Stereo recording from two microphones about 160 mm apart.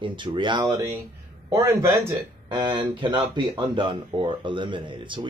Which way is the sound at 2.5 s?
30° right (ahead or behind).